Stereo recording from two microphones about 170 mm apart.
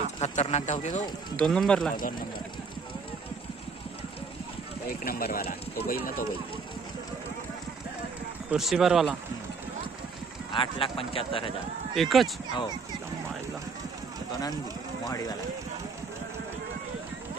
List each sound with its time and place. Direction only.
0.2 s speech: 40° left (ahead or behind)
1.3 s speech: 5° left (ahead or behind)
5.0 s speech: 60° left (ahead or behind)
8.5 s speech: centre (ahead or behind)
10.5 s speech: 30° left (ahead or behind)
11.9 s speech: centre (ahead or behind)
15.0 s speech: 20° left (ahead or behind)